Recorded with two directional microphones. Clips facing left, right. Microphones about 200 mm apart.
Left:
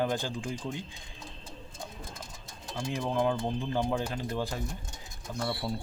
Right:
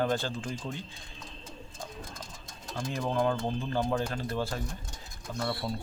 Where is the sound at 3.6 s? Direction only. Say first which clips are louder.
Even; 15° left (ahead or behind).